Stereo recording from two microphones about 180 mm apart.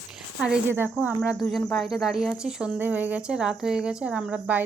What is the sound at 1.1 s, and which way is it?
Speech, centre (ahead or behind).